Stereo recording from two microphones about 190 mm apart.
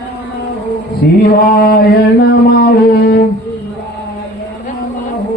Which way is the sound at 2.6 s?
55° left (ahead or behind).